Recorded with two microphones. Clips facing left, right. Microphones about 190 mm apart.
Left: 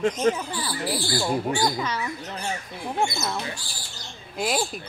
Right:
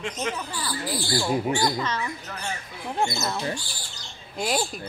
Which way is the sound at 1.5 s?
10° left (ahead or behind).